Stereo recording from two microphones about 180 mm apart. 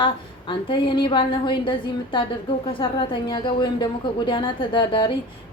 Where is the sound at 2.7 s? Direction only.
30° left (ahead or behind).